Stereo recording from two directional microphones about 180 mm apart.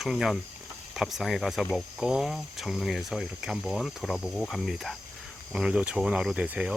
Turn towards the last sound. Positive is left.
turn(degrees=-5)  # may be behind; listen again after turning